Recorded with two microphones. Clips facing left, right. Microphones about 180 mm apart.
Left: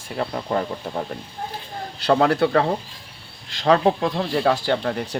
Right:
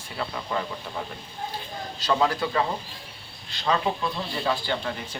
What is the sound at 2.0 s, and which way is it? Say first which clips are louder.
Speech: left 7 dB; 65° left (ahead or behind).